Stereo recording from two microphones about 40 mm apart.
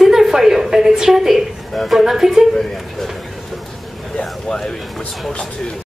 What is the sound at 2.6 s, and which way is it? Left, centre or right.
Speech, centre.